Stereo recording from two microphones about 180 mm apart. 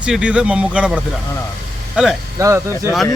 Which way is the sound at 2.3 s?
15° right (ahead or behind).